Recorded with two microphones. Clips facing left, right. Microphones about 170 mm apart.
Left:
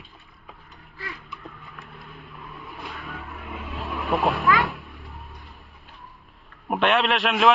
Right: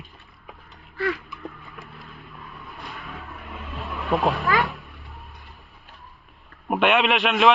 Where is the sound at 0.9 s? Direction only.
75° right (ahead or behind).